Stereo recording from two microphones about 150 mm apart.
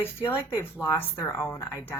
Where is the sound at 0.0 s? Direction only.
15° left (ahead or behind).